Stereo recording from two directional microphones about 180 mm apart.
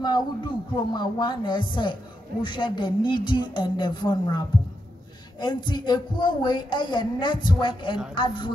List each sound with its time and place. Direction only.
0.0 s speech: 25° left (ahead or behind)
5.4 s speech: 25° left (ahead or behind)